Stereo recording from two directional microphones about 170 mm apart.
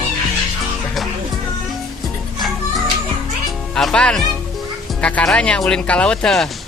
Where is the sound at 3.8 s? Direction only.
5° left (ahead or behind).